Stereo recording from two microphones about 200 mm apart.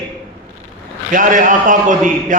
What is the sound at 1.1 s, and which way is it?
Speech, 40° right (ahead or behind).